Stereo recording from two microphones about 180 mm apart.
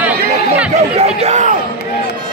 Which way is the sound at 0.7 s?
40° right (ahead or behind).